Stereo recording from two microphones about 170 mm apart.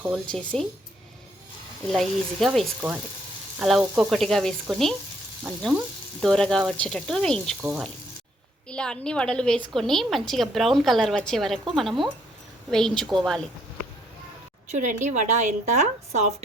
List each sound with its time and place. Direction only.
0.1 s a woman's voice: 5° left (ahead or behind)
1.9 s a woman's voice: centre (ahead or behind)
14.7 s a woman's voice: 45° right (ahead or behind)